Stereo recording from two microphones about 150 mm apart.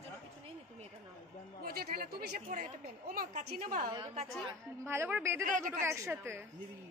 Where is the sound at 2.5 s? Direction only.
65° right (ahead or behind).